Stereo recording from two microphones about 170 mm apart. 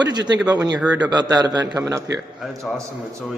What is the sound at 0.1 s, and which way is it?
A man's voice, 25° right (ahead or behind).